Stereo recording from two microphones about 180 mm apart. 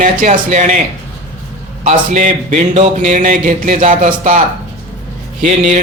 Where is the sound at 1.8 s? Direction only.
45° right (ahead or behind).